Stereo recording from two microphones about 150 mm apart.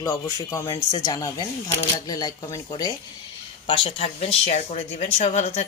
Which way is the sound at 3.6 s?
40° left (ahead or behind).